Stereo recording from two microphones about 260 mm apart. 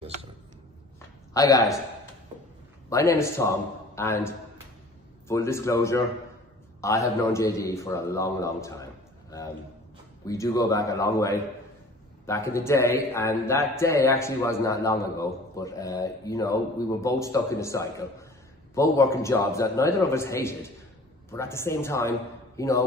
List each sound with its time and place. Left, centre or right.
1.3 s a man's voice: centre
2.9 s a man's voice: centre
5.3 s a man's voice: centre
10.2 s a man's voice: centre